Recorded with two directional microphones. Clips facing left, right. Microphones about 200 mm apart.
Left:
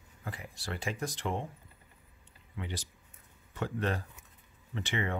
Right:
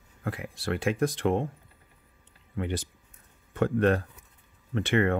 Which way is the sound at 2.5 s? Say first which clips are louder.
Right 9 dB; 55° right (ahead or behind).